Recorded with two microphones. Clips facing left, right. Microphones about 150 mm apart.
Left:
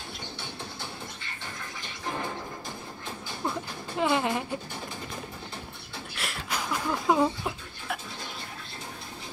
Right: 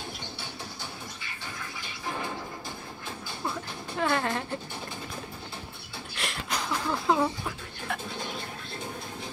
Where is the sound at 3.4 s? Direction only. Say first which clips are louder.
Left 2 dB; 15° left (ahead or behind).